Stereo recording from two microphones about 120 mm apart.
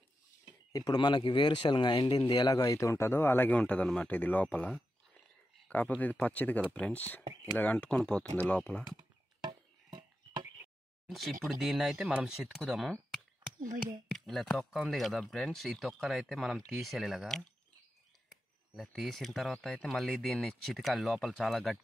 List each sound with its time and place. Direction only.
0.7 s speech: 35° left (ahead or behind); by 8.8 s 10° left (ahead or behind)
11.1 s speech: centre (ahead or behind)
14.1 s speech: 5° left (ahead or behind)
18.8 s speech: centre (ahead or behind)